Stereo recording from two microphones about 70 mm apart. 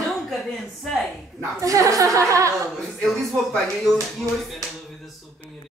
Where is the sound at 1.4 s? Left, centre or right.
Right.